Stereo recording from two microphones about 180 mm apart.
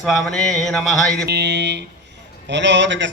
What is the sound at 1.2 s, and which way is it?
A man's voice, 70° right (ahead or behind).